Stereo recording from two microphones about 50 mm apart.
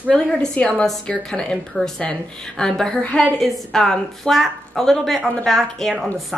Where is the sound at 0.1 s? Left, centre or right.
Left.